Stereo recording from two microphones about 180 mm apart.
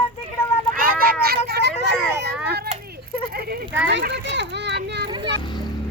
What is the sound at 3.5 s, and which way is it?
Children playing, 70° right (ahead or behind).